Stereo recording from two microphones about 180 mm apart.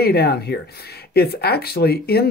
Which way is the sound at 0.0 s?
60° left (ahead or behind).